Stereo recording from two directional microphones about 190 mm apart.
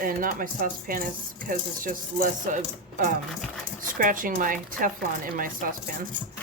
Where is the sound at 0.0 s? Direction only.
45° right (ahead or behind).